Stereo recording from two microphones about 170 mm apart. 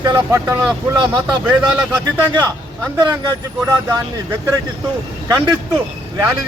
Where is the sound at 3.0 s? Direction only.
20° right (ahead or behind).